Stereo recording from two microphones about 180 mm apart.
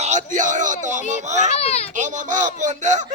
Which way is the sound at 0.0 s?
40° right (ahead or behind).